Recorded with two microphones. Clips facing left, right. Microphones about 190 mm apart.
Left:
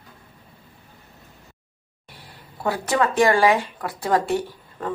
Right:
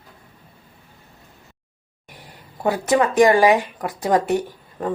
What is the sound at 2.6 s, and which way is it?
Speech, 15° right (ahead or behind).